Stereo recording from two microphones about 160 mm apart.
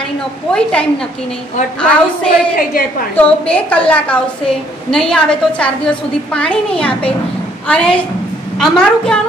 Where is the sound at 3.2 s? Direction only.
10° left (ahead or behind).